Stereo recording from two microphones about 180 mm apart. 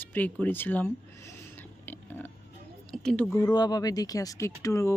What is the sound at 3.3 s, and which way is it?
Speech, 15° left (ahead or behind).